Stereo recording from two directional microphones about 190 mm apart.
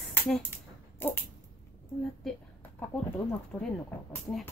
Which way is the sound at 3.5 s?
10° left (ahead or behind).